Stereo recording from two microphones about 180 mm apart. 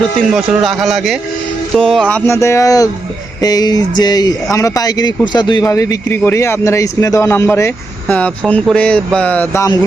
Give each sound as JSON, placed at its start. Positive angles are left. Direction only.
{"t": 0.3, "sound": "speech", "side_deg": 0}
{"t": 3.4, "sound": "a sound", "side_deg": 20}
{"t": 4.5, "sound": "speech", "side_deg": 20}